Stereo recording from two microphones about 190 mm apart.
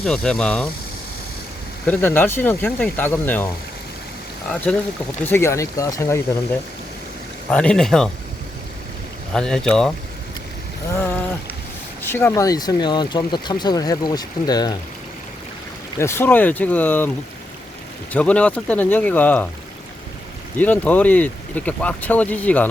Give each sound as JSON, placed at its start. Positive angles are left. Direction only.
{"t": 0.0, "sound": "speech", "side_deg": 5}
{"t": 1.9, "sound": "speech", "side_deg": 10}
{"t": 4.4, "sound": "speech", "side_deg": 5}
{"t": 9.3, "sound": "speech", "side_deg": 5}
{"t": 10.9, "sound": "speech", "side_deg": 10}
{"t": 16.0, "sound": "speech", "side_deg": 15}
{"t": 18.1, "sound": "speech", "side_deg": 5}
{"t": 20.6, "sound": "speech", "side_deg": 10}